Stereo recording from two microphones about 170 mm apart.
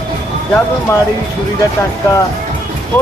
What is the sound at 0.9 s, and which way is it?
Speech, 15° left (ahead or behind).